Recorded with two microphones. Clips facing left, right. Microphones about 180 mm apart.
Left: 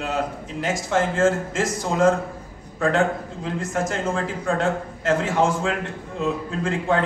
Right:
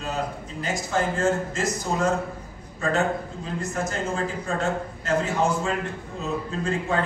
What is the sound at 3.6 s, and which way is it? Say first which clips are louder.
A man's voice: left 3 dB; 90° left.